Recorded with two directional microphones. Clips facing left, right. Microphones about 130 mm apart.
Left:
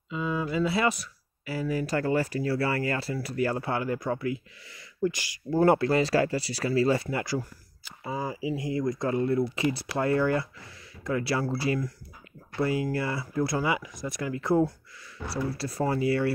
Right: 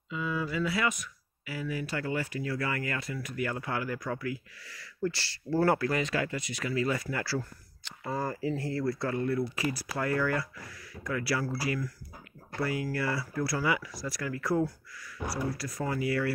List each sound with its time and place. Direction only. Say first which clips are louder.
0.1 s speech: left 3 dB; 25° left (ahead or behind)
7.8 s speech: left 1 dB; 5° left (ahead or behind); by 16.3 s 30° left (ahead or behind)